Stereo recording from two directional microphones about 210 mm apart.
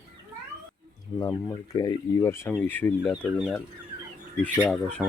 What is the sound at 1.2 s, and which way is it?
Speech, 15° left (ahead or behind).